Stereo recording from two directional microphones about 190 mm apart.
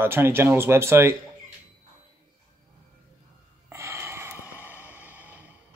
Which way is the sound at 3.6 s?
15° right (ahead or behind).